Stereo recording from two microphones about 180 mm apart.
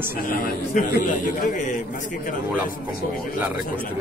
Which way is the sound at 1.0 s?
45° left (ahead or behind).